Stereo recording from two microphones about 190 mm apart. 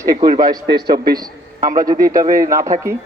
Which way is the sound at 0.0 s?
20° right (ahead or behind).